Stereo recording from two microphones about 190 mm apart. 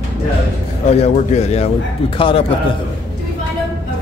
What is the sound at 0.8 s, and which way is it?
Speech, 35° left (ahead or behind).